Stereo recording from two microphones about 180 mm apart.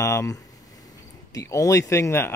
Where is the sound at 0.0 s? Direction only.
15° left (ahead or behind).